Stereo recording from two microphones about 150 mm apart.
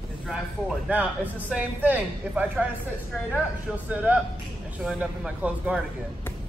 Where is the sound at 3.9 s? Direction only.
10° right (ahead or behind).